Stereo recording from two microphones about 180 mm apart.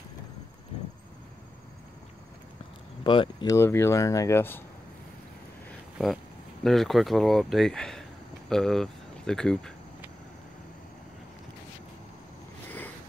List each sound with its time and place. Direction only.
3.0 s speech: 25° left (ahead or behind)
3.5 s speech: 15° left (ahead or behind)
6.6 s speech: centre (ahead or behind)